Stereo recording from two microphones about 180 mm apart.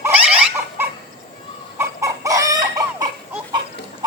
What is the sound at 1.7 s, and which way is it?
Chicken, 15° right (ahead or behind).